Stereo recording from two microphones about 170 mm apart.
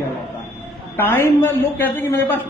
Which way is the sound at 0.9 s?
15° left (ahead or behind).